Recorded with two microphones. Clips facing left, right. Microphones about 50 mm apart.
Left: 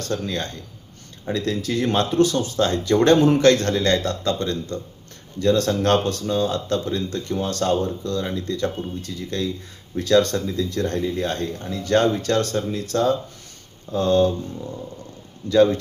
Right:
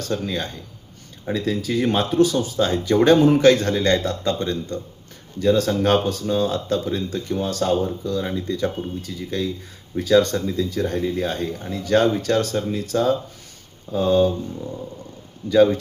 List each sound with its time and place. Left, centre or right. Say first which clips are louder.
0.0 s speech: right 1 dB; centre